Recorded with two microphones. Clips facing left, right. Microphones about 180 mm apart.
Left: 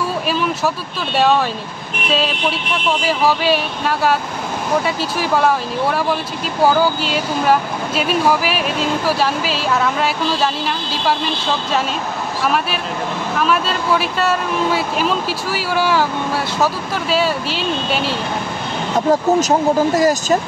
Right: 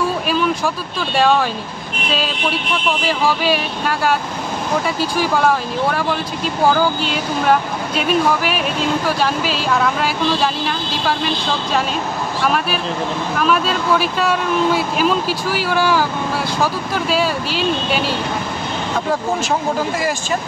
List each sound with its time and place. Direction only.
1.1 s speech: centre (ahead or behind)
3.1 s speech: centre (ahead or behind)
12.4 s speech: centre (ahead or behind)
18.9 s speech: 40° left (ahead or behind)